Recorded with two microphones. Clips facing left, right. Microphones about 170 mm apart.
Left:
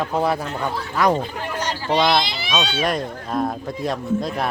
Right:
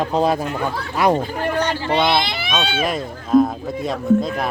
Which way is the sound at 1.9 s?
5° right (ahead or behind).